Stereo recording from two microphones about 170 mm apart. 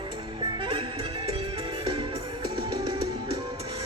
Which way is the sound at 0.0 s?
30° right (ahead or behind).